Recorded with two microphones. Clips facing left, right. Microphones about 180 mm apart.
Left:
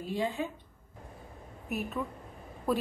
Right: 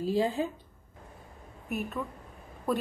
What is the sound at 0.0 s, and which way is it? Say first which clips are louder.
Speech: right 5 dB; 35° right (ahead or behind).